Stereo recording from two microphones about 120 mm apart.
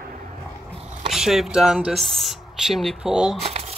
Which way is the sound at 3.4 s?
60° right (ahead or behind).